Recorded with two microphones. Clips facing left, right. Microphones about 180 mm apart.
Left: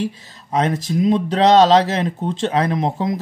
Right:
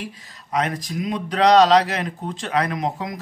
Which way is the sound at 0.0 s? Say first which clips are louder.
Left 10 dB; 30° left (ahead or behind).